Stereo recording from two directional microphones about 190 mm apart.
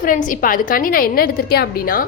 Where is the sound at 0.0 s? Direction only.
45° left (ahead or behind).